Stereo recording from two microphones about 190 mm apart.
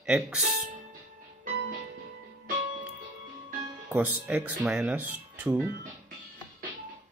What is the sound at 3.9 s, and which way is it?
Speech, 10° right (ahead or behind).